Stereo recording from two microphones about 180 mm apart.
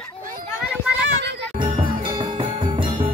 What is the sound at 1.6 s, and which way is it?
Music, 25° right (ahead or behind).